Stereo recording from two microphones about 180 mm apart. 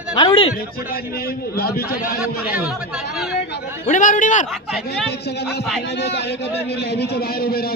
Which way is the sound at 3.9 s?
45° left (ahead or behind).